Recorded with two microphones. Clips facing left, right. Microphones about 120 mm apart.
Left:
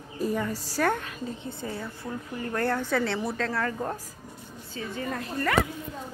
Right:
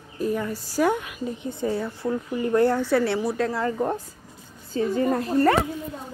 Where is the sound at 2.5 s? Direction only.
15° right (ahead or behind).